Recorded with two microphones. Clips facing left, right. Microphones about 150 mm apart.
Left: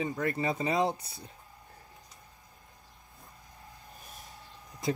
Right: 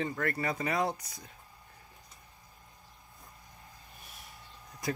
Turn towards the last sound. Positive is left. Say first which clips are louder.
# left 3 dB
turn(degrees=25)  # may be behind; listen again after turning